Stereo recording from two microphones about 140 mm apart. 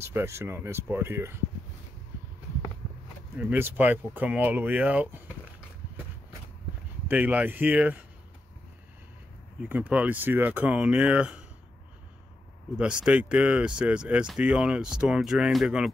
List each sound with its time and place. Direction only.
0.0 s speech: 20° right (ahead or behind)
3.3 s speech: 15° right (ahead or behind)
7.1 s speech: 10° right (ahead or behind)
9.6 s speech: 10° right (ahead or behind)
12.7 s speech: 10° right (ahead or behind)